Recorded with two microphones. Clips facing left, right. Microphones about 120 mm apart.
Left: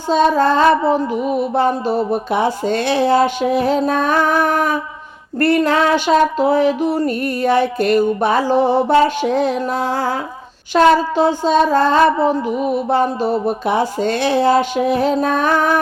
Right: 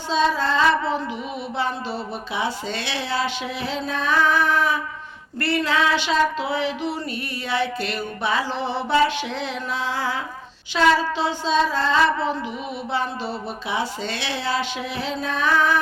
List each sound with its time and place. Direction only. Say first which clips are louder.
0.1 s female singing: left 8 dB; 50° left (ahead or behind)